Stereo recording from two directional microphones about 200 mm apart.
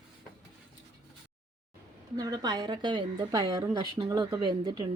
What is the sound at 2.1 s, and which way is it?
Speech, 20° right (ahead or behind).